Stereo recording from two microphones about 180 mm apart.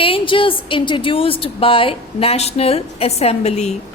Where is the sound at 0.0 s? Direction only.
30° left (ahead or behind).